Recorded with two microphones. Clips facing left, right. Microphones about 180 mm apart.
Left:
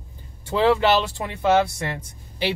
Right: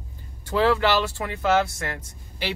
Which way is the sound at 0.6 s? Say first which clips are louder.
Left 2 dB; 20° left (ahead or behind).